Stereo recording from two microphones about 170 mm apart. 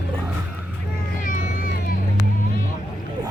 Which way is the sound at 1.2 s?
50° left (ahead or behind).